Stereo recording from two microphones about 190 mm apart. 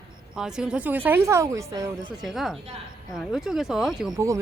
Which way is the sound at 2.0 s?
Centre (ahead or behind).